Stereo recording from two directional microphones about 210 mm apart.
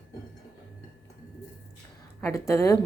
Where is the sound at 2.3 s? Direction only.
15° left (ahead or behind).